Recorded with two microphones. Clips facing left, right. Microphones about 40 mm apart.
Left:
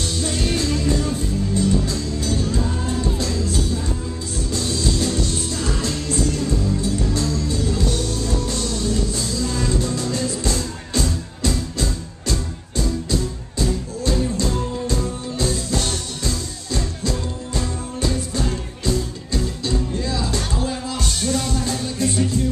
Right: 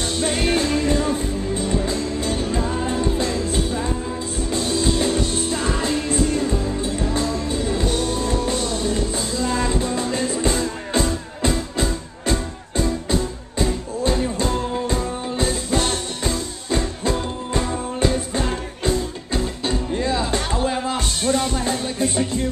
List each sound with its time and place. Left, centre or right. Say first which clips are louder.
0.1 s music: right 5 dB; right
21.2 s music: right 2 dB; centre